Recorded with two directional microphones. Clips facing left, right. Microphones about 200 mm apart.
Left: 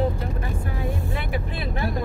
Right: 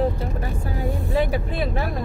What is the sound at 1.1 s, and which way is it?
Speech, 40° right (ahead or behind).